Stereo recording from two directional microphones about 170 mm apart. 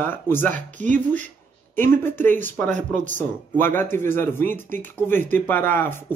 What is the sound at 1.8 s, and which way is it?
Speech, 10° left (ahead or behind).